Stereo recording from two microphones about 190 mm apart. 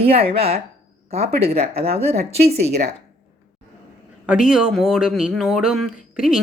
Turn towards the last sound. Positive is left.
turn(degrees=-5)  # may be behind; listen again after turning